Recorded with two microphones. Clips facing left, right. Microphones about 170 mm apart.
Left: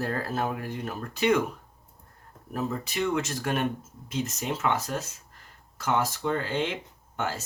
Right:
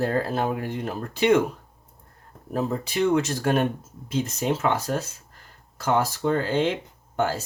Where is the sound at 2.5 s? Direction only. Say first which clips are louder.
Right 5 dB; 30° right (ahead or behind).